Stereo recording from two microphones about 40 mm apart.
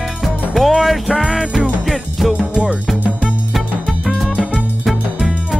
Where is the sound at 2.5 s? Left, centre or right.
Right.